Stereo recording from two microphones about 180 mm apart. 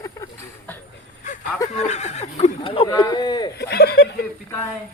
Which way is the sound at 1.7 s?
40° left (ahead or behind).